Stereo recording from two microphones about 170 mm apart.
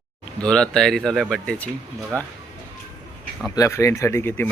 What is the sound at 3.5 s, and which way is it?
Speech, 20° left (ahead or behind).